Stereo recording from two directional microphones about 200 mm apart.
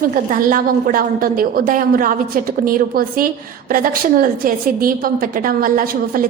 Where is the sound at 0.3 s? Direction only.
45° right (ahead or behind).